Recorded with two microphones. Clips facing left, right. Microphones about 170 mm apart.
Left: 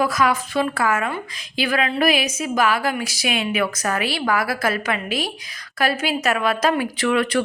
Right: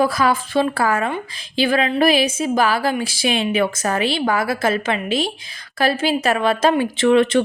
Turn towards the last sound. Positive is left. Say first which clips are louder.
# right 6 dB
turn(degrees=-25)  # may be behind; listen again after turning